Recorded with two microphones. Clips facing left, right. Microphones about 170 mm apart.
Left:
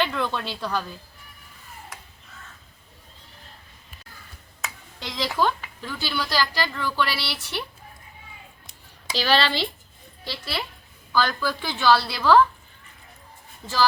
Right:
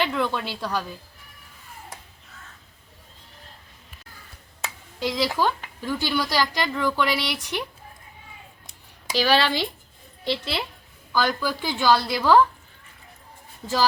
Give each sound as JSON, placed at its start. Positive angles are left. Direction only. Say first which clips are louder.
{"t": 0.0, "sound": "a woman's voice", "louder": "right 1 dB", "side_deg": -10}
{"t": 4.9, "sound": "a woman's voice", "louder": "right 2 dB", "side_deg": -10}
{"t": 9.1, "sound": "a woman's voice", "louder": "right 2 dB", "side_deg": -10}